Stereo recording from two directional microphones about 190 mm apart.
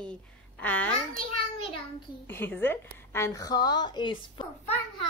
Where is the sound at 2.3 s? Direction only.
10° left (ahead or behind).